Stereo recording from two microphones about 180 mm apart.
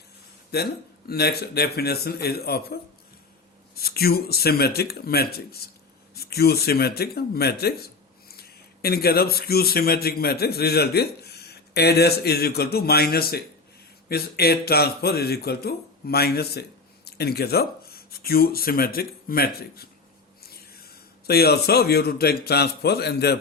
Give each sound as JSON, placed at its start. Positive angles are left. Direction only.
{"t": 0.5, "sound": "speech", "side_deg": 60}
{"t": 3.8, "sound": "a man's voice", "side_deg": 60}